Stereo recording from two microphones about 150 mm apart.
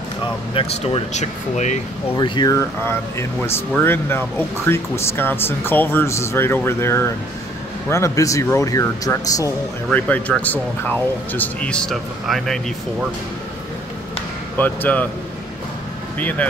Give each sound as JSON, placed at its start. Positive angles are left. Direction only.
{"t": 0.6, "sound": "speech", "side_deg": 45}
{"t": 2.1, "sound": "speech", "side_deg": 30}
{"t": 2.5, "sound": "speech", "side_deg": 15}
{"t": 9.8, "sound": "speech", "side_deg": 10}
{"t": 14.6, "sound": "speech", "side_deg": 10}
{"t": 16.2, "sound": "speech", "side_deg": 10}